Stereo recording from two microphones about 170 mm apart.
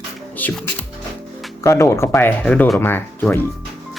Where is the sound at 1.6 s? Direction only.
15° left (ahead or behind).